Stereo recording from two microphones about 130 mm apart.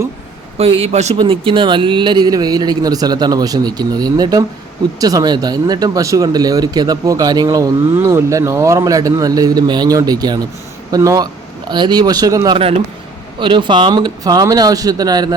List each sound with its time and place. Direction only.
0.6 s a man's voice: 50° right (ahead or behind)
1.1 s speech: 40° right (ahead or behind)
7.9 s speech: 20° right (ahead or behind)
13.4 s speech: 40° right (ahead or behind)